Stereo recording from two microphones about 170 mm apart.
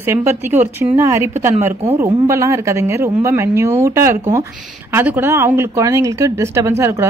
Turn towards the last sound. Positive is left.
turn(degrees=-15)  # may be behind; listen again after turning